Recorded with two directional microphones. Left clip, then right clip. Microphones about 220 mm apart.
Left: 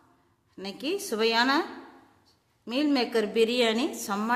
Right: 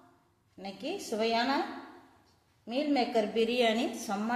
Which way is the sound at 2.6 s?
40° left (ahead or behind).